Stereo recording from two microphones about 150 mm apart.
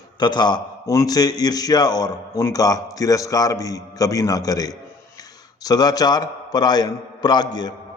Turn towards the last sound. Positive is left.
turn(degrees=30)  # may be behind; listen again after turning